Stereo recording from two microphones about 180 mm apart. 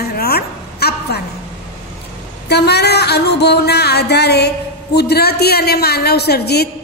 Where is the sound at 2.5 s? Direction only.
65° left (ahead or behind).